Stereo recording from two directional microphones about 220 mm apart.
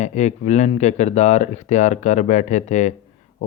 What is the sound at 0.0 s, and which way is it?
A man's voice, 30° left (ahead or behind).